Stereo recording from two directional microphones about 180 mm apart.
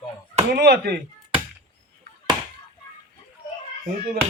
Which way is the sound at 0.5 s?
65° right (ahead or behind).